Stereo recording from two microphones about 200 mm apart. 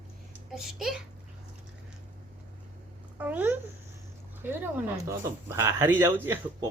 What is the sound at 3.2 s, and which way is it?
Speech, 10° right (ahead or behind).